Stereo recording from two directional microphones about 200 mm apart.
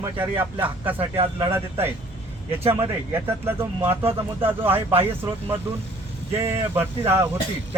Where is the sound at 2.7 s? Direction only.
10° right (ahead or behind).